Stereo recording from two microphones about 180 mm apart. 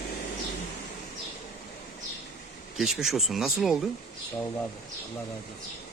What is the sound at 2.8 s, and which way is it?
Speech, centre (ahead or behind).